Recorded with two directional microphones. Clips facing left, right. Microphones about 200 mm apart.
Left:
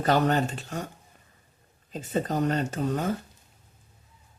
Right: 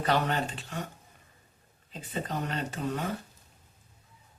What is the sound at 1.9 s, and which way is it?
Speech, 45° left (ahead or behind).